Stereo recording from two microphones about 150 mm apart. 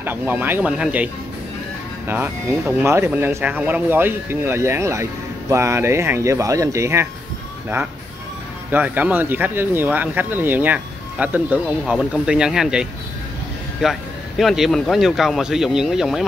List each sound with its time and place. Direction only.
0.0 s speech: 15° right (ahead or behind)
8.7 s speech: 10° right (ahead or behind)